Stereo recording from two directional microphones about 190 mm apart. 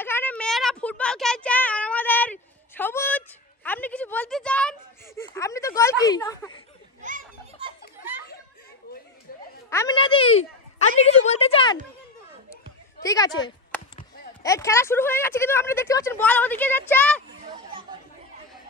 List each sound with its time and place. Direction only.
0.0 s a sound: 10° left (ahead or behind)
5.8 s a woman's voice: 15° left (ahead or behind)
7.0 s children playing: 40° right (ahead or behind)
9.7 s a woman's voice: 15° left (ahead or behind)
9.9 s a woman's voice: 30° left (ahead or behind)
13.0 s a woman's voice: 20° left (ahead or behind)